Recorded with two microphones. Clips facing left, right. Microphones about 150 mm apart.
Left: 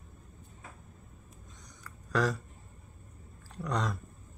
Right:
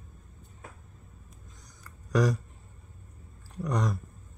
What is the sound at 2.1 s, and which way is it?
Speech, 15° right (ahead or behind).